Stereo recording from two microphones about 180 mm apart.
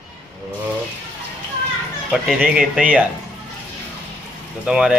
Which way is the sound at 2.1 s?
5° right (ahead or behind).